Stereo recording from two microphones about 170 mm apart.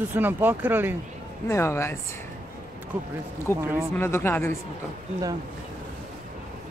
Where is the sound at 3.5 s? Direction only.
15° left (ahead or behind).